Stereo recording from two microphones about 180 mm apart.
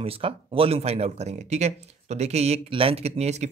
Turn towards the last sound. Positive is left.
turn(degrees=-40)  # may be behind; listen again after turning